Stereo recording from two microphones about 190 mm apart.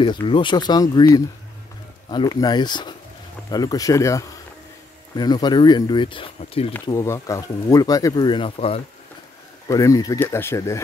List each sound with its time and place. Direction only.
0.0 s speech: 25° left (ahead or behind)
6.7 s speech: 15° left (ahead or behind); by 8.8 s 30° left (ahead or behind)
9.7 s speech: 20° left (ahead or behind)